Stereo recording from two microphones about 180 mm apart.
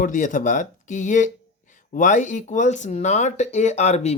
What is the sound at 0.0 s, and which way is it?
Speech, 45° left (ahead or behind).